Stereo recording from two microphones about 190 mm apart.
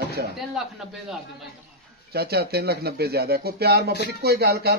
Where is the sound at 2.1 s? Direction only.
55° right (ahead or behind).